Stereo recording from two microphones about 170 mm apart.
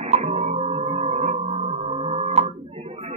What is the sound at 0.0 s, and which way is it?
Tuning fork, 40° right (ahead or behind).